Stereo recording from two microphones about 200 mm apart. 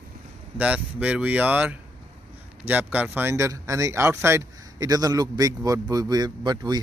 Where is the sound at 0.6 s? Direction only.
5° right (ahead or behind).